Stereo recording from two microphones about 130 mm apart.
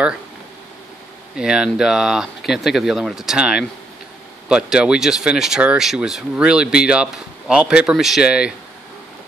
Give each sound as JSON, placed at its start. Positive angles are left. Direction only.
{"t": 1.3, "sound": "speech", "side_deg": -5}